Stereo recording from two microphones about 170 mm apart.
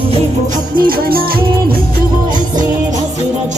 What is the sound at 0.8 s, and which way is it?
Music, 60° right (ahead or behind).